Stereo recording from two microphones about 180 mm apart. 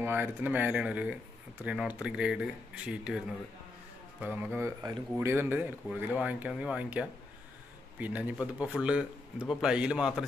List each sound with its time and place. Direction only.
0.0 s speech: 10° right (ahead or behind)